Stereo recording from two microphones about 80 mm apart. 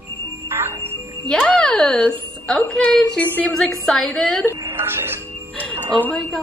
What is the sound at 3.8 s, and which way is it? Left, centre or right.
Speech, centre.